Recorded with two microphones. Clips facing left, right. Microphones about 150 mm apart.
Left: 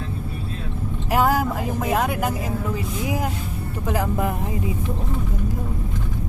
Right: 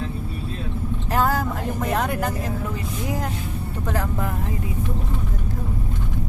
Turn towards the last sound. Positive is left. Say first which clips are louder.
# left 3 dB
turn(degrees=15)  # may be behind; listen again after turning